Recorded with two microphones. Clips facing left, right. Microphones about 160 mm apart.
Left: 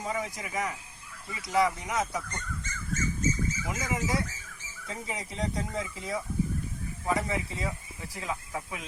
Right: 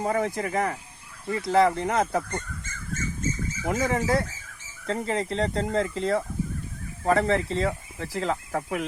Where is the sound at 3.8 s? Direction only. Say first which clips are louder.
Right 6 dB; 55° right (ahead or behind).